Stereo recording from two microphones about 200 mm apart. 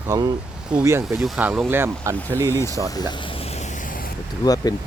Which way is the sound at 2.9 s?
20° left (ahead or behind).